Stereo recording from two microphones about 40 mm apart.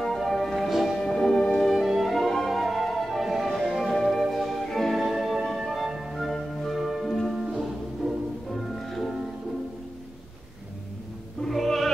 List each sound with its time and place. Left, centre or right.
0.0 s music: centre
1.0 s music: centre
1.7 s music: centre
7.1 s music: centre
8.0 s music: right
8.5 s music: centre
11.4 s music: centre